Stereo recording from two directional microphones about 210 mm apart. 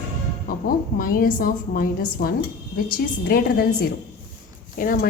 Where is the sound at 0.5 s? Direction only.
45° left (ahead or behind).